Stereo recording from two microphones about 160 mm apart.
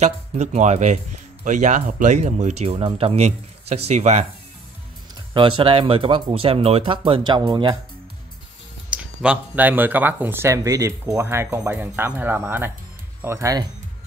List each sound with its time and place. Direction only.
0.0 s speech: 45° right (ahead or behind)
5.3 s speech: 35° right (ahead or behind)
8.9 s speech: 10° right (ahead or behind)